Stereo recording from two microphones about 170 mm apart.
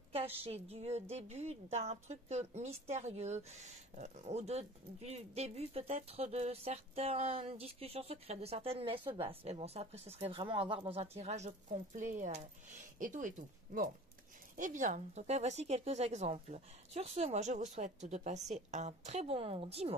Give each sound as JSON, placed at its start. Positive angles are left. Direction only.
{"t": 0.4, "sound": "speech", "side_deg": -35}
{"t": 14.6, "sound": "speech", "side_deg": -50}